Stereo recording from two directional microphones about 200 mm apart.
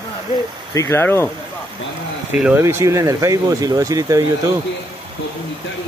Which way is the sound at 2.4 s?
10° right (ahead or behind).